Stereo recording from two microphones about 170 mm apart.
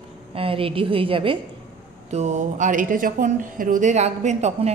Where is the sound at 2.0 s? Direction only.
45° right (ahead or behind).